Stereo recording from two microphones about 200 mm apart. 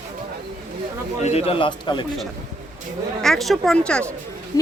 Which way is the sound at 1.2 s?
30° left (ahead or behind).